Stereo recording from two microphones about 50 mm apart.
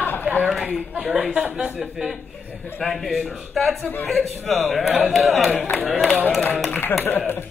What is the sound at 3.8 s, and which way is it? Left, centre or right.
Speech, left.